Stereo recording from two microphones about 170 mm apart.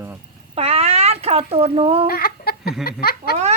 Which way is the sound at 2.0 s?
65° left (ahead or behind).